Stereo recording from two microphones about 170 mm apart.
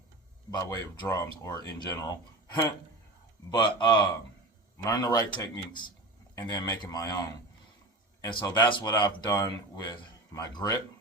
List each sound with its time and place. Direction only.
0.5 s speech: 25° left (ahead or behind)
3.5 s speech: 30° left (ahead or behind)
8.2 s speech: 25° left (ahead or behind)